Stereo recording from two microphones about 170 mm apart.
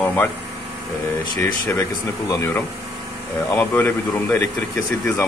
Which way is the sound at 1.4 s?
15° left (ahead or behind).